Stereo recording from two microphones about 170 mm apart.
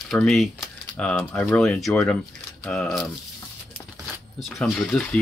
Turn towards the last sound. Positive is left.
turn(degrees=5)  # may be behind; listen again after turning